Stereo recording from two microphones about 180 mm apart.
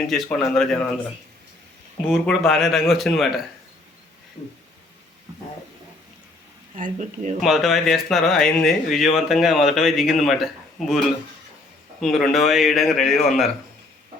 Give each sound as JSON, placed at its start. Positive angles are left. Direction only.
{"t": 0.1, "sound": "speech", "side_deg": 0}
{"t": 2.0, "sound": "speech", "side_deg": 0}
{"t": 6.7, "sound": "speech", "side_deg": -45}
{"t": 7.4, "sound": "speech", "side_deg": 0}